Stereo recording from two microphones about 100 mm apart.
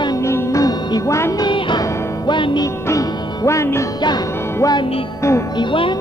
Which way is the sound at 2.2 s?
50° left (ahead or behind).